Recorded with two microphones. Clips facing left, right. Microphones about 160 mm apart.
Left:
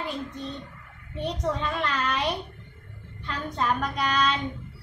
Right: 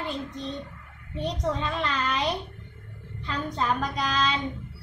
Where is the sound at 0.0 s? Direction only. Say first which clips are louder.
Even; centre (ahead or behind).